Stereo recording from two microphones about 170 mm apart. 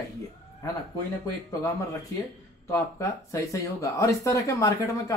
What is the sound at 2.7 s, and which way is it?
Speech, 20° left (ahead or behind).